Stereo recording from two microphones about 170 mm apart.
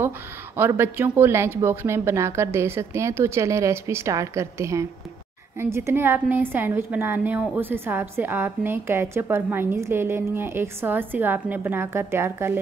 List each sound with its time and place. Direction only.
0.6 s a woman's voice: 10° right (ahead or behind)